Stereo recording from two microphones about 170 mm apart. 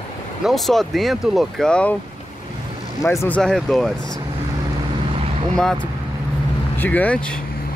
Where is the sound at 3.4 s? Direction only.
Centre (ahead or behind).